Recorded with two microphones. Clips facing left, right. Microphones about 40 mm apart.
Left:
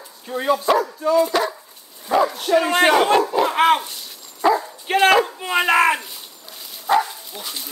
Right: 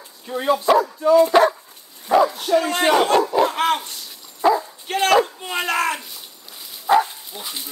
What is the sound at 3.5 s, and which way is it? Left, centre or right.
Dog, centre.